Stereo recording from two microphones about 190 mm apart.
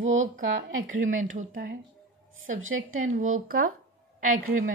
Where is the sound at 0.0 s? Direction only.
90° right.